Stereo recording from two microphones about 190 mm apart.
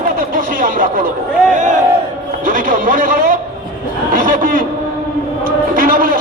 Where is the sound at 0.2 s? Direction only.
45° right (ahead or behind).